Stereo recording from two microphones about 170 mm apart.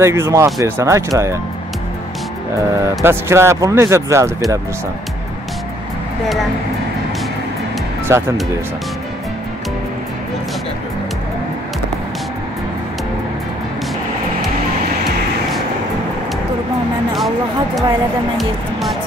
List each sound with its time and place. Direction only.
0.0 s speech: 15° right (ahead or behind)
3.0 s speech: 15° right (ahead or behind)
8.1 s speech: 15° right (ahead or behind)
18.4 s speech: centre (ahead or behind)